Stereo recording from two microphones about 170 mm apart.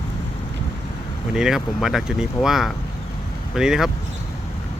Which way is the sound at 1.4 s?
5° right (ahead or behind).